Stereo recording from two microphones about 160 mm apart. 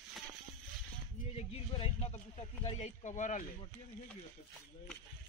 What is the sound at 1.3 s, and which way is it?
Speech, 40° left (ahead or behind).